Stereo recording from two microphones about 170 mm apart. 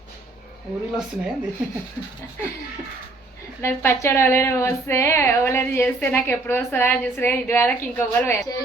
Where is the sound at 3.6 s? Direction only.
15° left (ahead or behind).